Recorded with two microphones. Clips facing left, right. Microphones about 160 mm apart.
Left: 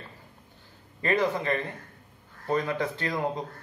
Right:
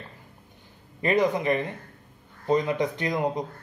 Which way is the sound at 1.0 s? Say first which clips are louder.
Right 3 dB; 15° right (ahead or behind).